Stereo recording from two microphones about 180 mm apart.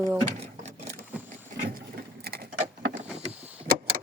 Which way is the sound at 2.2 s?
60° right (ahead or behind).